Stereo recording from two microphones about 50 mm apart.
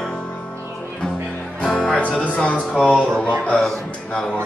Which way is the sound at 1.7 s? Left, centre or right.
Left.